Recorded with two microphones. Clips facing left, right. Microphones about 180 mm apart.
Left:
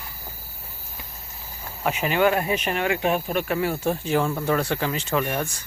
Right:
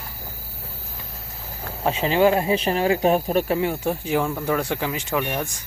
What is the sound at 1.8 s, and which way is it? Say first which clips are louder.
Speech: right 3 dB; 30° right (ahead or behind).